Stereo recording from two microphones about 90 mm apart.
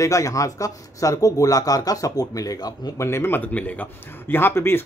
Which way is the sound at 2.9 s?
30° left (ahead or behind).